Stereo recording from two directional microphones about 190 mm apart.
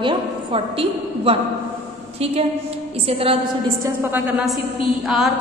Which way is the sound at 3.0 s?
30° right (ahead or behind).